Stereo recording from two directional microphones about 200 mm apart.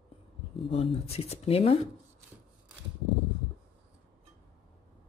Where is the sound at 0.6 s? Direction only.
30° left (ahead or behind).